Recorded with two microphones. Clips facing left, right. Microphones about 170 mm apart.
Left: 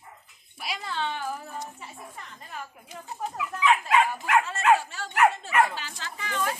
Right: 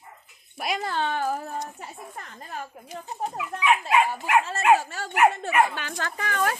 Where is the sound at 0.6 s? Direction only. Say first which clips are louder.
Right 5 dB; 50° right (ahead or behind).